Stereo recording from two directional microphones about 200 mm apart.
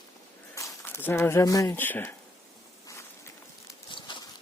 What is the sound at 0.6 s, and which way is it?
Speech, 10° left (ahead or behind).